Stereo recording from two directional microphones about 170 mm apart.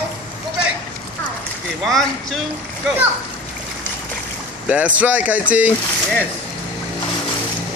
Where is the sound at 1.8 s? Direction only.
Centre (ahead or behind).